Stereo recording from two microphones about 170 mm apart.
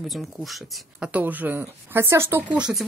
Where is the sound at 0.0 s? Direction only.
Centre (ahead or behind).